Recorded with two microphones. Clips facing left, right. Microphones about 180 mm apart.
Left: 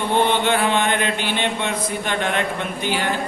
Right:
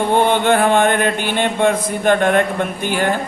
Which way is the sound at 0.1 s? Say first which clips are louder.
Right 3 dB; 50° right (ahead or behind).